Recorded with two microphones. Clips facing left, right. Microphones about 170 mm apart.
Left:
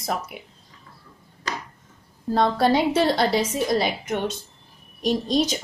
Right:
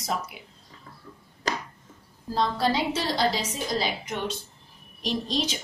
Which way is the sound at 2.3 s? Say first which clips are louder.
Left 5 dB; 55° left (ahead or behind).